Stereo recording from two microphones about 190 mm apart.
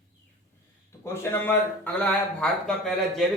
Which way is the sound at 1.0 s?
15° left (ahead or behind).